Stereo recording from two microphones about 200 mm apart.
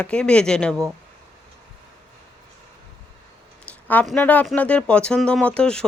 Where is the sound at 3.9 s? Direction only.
10° left (ahead or behind).